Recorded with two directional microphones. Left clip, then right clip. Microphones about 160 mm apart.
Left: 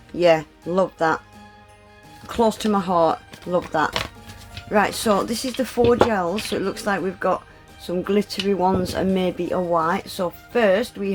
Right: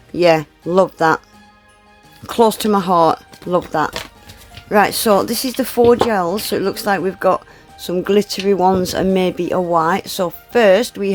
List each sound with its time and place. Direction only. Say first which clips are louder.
0.2 s speech: right 4 dB; 40° right (ahead or behind)
2.2 s speech: right 6 dB; 40° right (ahead or behind)